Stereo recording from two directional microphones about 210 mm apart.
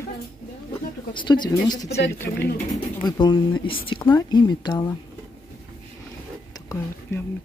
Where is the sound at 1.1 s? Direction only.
20° left (ahead or behind).